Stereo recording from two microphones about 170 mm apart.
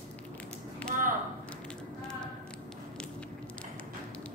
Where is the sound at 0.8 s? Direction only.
55° right (ahead or behind).